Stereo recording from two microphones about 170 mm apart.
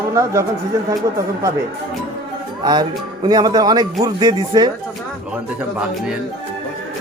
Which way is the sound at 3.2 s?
25° right (ahead or behind).